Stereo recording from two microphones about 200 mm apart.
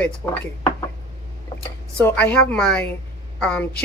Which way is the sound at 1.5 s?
25° left (ahead or behind).